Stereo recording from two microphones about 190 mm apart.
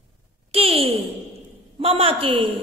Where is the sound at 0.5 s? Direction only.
30° right (ahead or behind).